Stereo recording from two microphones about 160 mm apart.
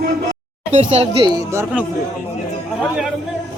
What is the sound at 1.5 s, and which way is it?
Speech, 15° right (ahead or behind).